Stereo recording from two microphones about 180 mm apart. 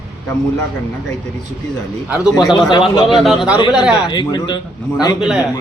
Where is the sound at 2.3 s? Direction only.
25° left (ahead or behind).